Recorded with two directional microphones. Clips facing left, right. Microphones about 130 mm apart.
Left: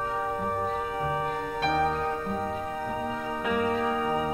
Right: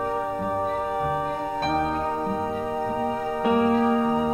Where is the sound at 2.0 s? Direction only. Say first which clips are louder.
Right 4 dB; 30° right (ahead or behind).